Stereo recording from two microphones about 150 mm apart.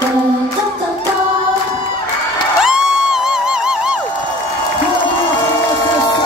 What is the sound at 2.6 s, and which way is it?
Music, 5° right (ahead or behind).